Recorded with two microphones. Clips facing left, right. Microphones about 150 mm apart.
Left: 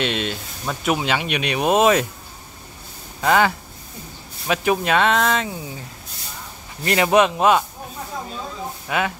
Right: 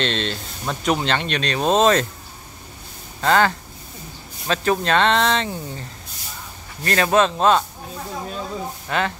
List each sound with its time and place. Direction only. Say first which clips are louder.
0.0 s speech: even; 10° left (ahead or behind)
3.2 s speech: even; 10° left (ahead or behind)
6.8 s speech: left 1 dB; 15° left (ahead or behind)
8.8 s speech: even; 10° left (ahead or behind)